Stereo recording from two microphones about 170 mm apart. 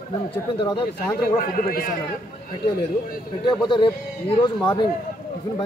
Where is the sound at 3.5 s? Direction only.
30° left (ahead or behind).